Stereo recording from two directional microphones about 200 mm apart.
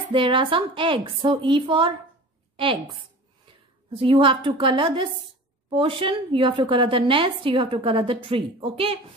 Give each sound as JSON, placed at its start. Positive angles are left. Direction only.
{"t": 0.1, "sound": "a woman's voice", "side_deg": -25}